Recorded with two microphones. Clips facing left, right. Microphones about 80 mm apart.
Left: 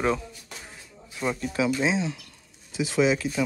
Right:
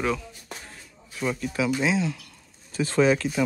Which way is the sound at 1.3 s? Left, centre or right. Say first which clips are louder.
Left 1 dB; left.